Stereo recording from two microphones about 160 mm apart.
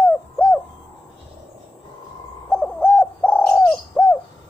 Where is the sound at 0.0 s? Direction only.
10° left (ahead or behind).